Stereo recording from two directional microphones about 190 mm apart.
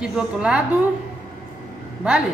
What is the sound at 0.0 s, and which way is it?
Speech, 5° right (ahead or behind).